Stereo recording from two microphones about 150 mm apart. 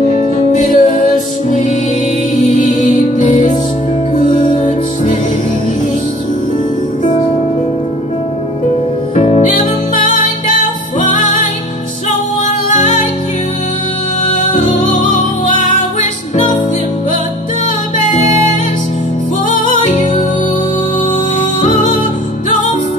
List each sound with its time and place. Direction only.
0.5 s music: 60° left (ahead or behind)
9.2 s music: 45° left (ahead or behind)
11.0 s music: 55° left (ahead or behind)
12.4 s music: 55° left (ahead or behind)
14.3 s music: 60° left (ahead or behind)
19.5 s music: 55° left (ahead or behind)
21.6 s music: 60° left (ahead or behind)